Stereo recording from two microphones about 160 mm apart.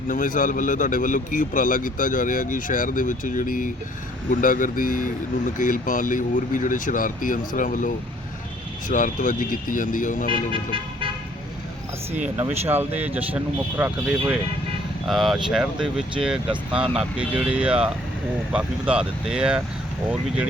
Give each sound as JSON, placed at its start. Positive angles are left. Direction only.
{"t": 0.1, "sound": "a man's voice", "side_deg": 55}
{"t": 10.2, "sound": "vehicle", "side_deg": -30}
{"t": 12.4, "sound": "speech", "side_deg": -10}
{"t": 15.0, "sound": "speech", "side_deg": 0}